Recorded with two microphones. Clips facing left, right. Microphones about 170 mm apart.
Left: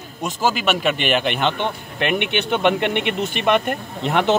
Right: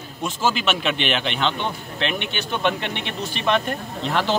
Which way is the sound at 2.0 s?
65° left (ahead or behind).